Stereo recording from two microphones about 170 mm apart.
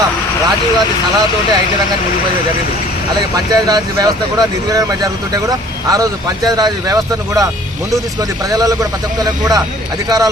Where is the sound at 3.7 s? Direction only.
20° right (ahead or behind).